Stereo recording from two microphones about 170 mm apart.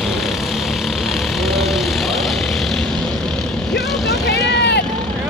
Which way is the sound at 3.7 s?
80° left.